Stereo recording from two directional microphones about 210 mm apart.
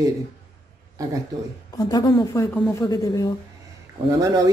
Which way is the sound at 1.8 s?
20° left (ahead or behind).